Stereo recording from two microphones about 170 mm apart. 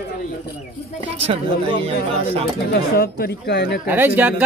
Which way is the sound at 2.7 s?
65° left (ahead or behind).